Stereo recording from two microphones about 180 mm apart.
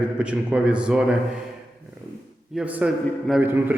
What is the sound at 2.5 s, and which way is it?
A man's voice, 5° right (ahead or behind).